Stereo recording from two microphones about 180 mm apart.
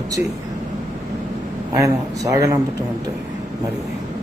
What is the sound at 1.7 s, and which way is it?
Speech, 20° right (ahead or behind).